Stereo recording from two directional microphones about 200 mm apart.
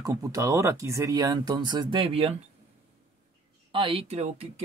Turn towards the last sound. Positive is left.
turn(degrees=-35)  # may be behind; listen again after turning